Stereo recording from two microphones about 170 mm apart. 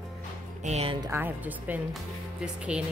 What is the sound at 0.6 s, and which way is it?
Speech, 40° right (ahead or behind).